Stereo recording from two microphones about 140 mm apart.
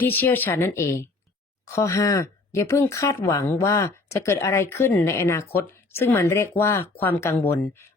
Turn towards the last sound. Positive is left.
turn(degrees=15)  # may be behind; listen again after turning